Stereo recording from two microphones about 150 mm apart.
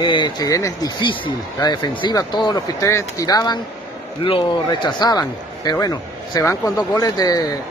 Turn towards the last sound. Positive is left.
turn(degrees=25)  # may be behind; listen again after turning